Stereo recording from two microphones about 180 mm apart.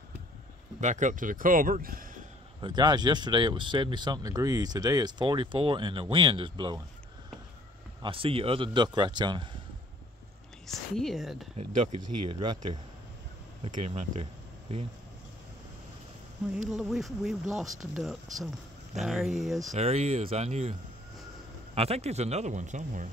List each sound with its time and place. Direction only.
0.7 s speech: 40° right (ahead or behind)
2.6 s speech: 25° right (ahead or behind)
8.0 s speech: 30° right (ahead or behind)
10.7 s speech: centre (ahead or behind)
11.5 s speech: 30° right (ahead or behind)
13.8 s speech: 35° right (ahead or behind)
16.7 s speech: centre (ahead or behind)
19.7 s speech: 35° right (ahead or behind)
21.7 s speech: 35° right (ahead or behind)